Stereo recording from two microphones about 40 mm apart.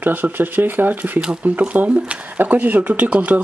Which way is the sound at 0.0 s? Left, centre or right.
Right.